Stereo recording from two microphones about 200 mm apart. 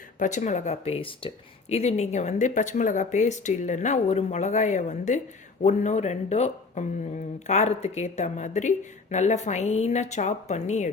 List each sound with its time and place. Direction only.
0.2 s speech: 40° left (ahead or behind)